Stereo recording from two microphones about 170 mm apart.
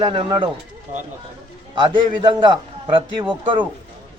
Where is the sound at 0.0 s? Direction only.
30° right (ahead or behind).